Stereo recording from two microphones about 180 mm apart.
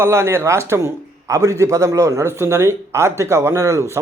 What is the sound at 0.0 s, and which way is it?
A man's voice, 15° right (ahead or behind).